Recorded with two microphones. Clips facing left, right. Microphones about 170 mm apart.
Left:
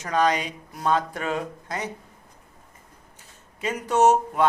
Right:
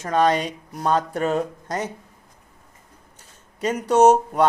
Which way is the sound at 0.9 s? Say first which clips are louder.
Right 3 dB; 40° right (ahead or behind).